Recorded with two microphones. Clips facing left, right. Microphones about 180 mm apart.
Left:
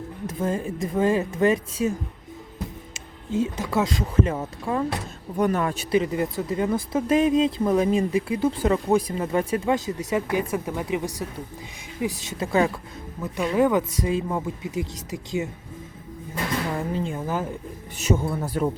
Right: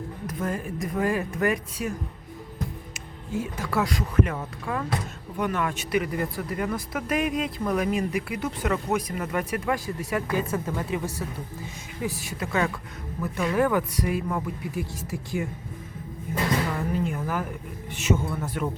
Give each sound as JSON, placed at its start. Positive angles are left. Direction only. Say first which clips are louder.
{"t": 0.3, "sound": "speech", "louder": "left 4 dB", "side_deg": 25}
{"t": 2.9, "sound": "speech", "louder": "left 8 dB", "side_deg": 20}
{"t": 5.4, "sound": "speech", "louder": "left 4 dB", "side_deg": 40}
{"t": 13.2, "sound": "speech", "louder": "left 3 dB", "side_deg": 20}
{"t": 16.9, "sound": "speech", "louder": "left 1 dB", "side_deg": 30}
{"t": 17.9, "sound": "speech", "louder": "left 2 dB", "side_deg": 35}